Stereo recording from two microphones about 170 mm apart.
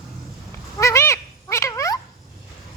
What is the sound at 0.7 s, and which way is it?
Cat, 15° left (ahead or behind).